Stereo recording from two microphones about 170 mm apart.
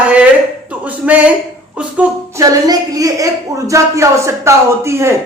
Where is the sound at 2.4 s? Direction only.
20° right (ahead or behind).